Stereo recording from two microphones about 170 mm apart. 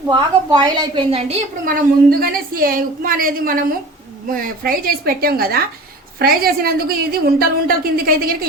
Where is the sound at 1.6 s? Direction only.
60° right (ahead or behind).